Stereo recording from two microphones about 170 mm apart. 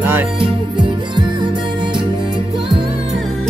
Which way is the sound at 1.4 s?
30° right (ahead or behind).